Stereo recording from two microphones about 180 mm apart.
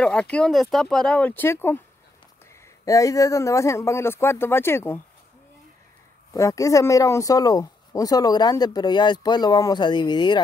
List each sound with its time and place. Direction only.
0.0 s speech: 5° left (ahead or behind)
2.8 s a man's voice: 20° left (ahead or behind)
6.3 s speech: 15° left (ahead or behind)